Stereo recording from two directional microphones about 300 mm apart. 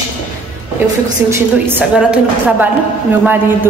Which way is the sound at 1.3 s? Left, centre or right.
Centre.